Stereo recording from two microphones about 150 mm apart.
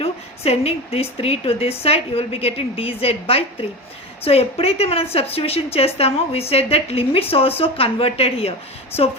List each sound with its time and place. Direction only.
0.0 s a woman's voice: 45° left (ahead or behind)